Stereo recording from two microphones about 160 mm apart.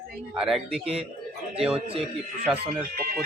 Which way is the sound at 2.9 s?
65° right (ahead or behind).